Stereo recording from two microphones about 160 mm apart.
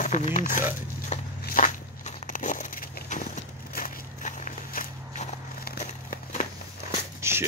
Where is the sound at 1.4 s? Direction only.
60° left (ahead or behind).